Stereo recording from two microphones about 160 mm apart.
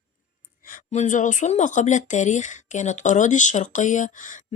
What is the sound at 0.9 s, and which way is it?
Speech, 50° left (ahead or behind).